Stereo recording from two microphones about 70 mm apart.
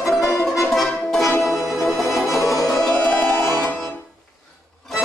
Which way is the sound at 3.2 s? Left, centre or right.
Left.